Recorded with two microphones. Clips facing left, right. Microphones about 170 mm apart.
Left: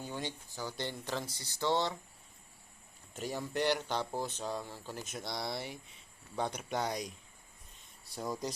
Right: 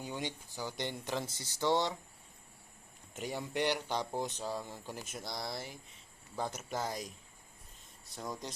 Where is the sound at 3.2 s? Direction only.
15° right (ahead or behind); by 5.7 s centre (ahead or behind).